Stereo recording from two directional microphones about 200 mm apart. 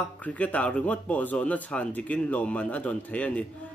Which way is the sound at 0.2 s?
5° left (ahead or behind).